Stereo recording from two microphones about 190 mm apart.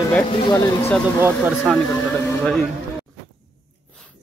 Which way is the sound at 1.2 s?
5° right (ahead or behind).